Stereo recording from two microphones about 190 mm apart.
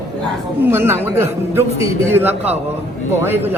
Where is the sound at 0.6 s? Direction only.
10° right (ahead or behind).